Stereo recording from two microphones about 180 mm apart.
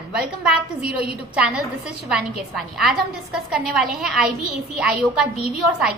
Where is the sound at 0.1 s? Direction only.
5° right (ahead or behind).